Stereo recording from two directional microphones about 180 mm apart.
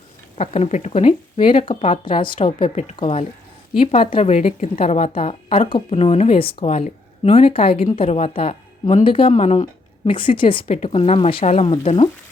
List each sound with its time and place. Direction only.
0.3 s a woman's voice: 35° left (ahead or behind)
10.1 s a woman's voice: 30° left (ahead or behind)